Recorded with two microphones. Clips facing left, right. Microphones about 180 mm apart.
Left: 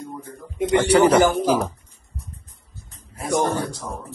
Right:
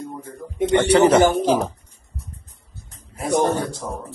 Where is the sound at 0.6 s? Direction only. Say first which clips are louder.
Right 1 dB; 25° right (ahead or behind).